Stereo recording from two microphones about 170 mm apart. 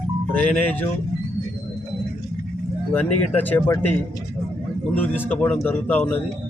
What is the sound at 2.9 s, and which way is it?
Speech, 10° left (ahead or behind).